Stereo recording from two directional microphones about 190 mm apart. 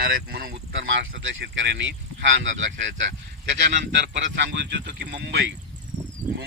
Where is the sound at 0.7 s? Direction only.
80° right.